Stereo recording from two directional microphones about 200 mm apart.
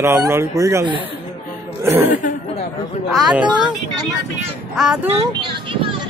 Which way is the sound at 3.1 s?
Centre (ahead or behind).